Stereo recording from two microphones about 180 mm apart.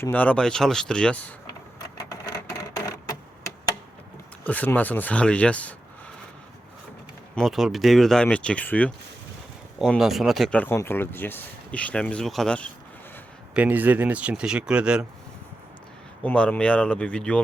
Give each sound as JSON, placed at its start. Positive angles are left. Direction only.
{"t": 0.0, "sound": "speech", "side_deg": 10}
{"t": 2.0, "sound": "a sound", "side_deg": 20}
{"t": 4.4, "sound": "speech", "side_deg": 10}
{"t": 7.3, "sound": "speech", "side_deg": 0}
{"t": 9.7, "sound": "speech", "side_deg": 0}
{"t": 13.5, "sound": "speech", "side_deg": -10}
{"t": 16.2, "sound": "speech", "side_deg": 5}